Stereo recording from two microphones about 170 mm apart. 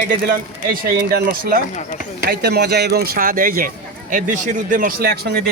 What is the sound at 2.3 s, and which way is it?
A man's voice, 75° right (ahead or behind).